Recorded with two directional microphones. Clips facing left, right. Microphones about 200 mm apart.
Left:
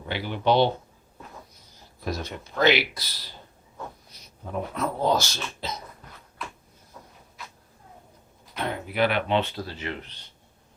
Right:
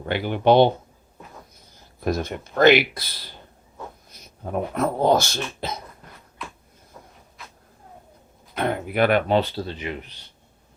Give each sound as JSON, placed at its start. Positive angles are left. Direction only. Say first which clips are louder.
{"t": 0.0, "sound": "speech", "louder": "right 6 dB", "side_deg": -55}
{"t": 2.0, "sound": "speech", "louder": "right 7 dB", "side_deg": -50}
{"t": 8.5, "sound": "speech", "louder": "right 4 dB", "side_deg": -55}
{"t": 9.6, "sound": "speech", "louder": "right 3 dB", "side_deg": -15}